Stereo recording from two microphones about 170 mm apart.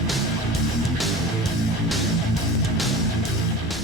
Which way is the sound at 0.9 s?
Centre (ahead or behind).